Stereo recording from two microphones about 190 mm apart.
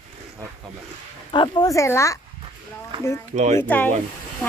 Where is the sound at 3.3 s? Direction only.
40° right (ahead or behind).